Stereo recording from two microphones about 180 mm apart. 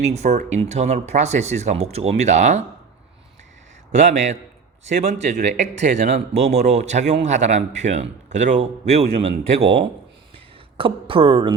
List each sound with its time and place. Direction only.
0.0 s a man's voice: 40° right (ahead or behind)
3.9 s a man's voice: 45° right (ahead or behind)
9.6 s a man's voice: 30° right (ahead or behind)